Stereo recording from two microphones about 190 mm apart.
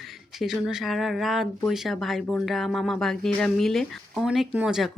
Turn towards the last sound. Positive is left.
turn(degrees=-5)  # may be behind; listen again after turning